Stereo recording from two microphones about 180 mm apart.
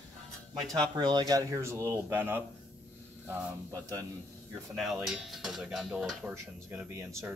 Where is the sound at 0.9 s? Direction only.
25° right (ahead or behind).